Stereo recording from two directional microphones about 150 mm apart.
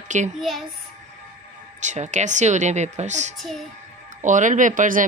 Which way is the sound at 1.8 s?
55° right (ahead or behind).